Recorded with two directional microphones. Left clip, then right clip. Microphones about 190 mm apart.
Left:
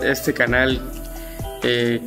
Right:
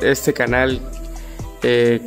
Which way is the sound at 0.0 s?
45° right (ahead or behind).